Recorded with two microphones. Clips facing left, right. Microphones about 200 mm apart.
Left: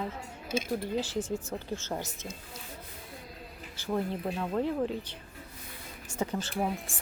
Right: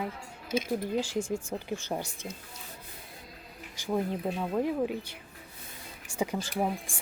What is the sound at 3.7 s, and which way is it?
A woman's voice, 15° right (ahead or behind).